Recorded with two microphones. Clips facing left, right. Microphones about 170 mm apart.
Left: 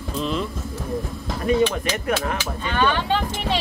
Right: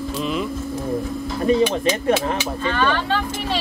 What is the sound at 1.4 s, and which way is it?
Speech, 30° right (ahead or behind).